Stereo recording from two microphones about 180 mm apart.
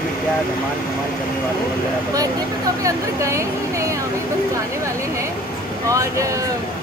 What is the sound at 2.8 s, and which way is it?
Speech, 15° right (ahead or behind).